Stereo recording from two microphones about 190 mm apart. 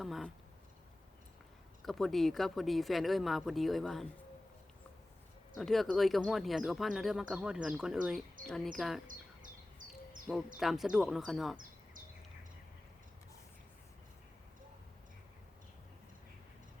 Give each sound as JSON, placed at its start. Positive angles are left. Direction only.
{"t": 0.0, "sound": "speech", "side_deg": 0}
{"t": 1.8, "sound": "speech", "side_deg": 0}
{"t": 5.5, "sound": "speech", "side_deg": 0}
{"t": 9.0, "sound": "a sound", "side_deg": -45}
{"t": 10.6, "sound": "speech", "side_deg": 0}